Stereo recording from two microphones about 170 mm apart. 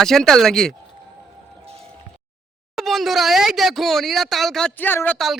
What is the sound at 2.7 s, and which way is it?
Speech, centre (ahead or behind).